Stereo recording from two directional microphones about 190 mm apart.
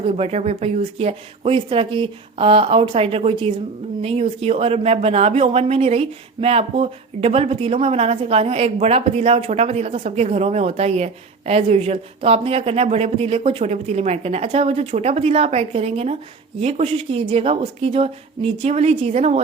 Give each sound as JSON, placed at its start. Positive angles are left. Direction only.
{"t": 0.0, "sound": "speech", "side_deg": -35}